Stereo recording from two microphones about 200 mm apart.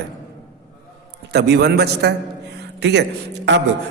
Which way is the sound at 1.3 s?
55° right (ahead or behind).